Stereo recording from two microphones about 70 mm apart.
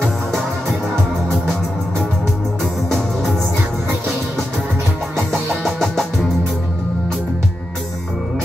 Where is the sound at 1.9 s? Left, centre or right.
Centre.